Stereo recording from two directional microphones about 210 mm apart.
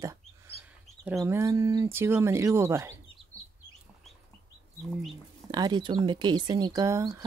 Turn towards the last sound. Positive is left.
turn(degrees=-15)  # may be behind; listen again after turning